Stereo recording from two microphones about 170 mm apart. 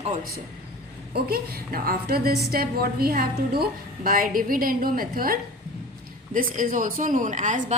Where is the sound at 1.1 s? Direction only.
65° right (ahead or behind).